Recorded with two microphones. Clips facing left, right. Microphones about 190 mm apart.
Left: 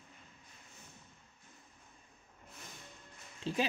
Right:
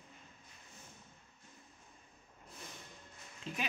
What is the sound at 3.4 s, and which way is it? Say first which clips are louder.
Speech: left 7 dB; 30° left (ahead or behind).